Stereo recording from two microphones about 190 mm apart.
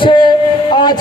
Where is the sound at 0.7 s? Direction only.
25° left (ahead or behind).